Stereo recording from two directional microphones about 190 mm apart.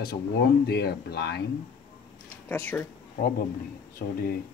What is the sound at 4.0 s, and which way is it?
Speech, 55° left (ahead or behind).